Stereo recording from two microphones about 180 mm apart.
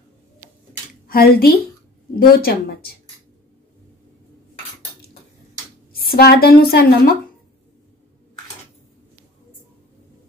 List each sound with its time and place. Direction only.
1.0 s speech: 55° left (ahead or behind)
5.9 s a woman's voice: 55° left (ahead or behind)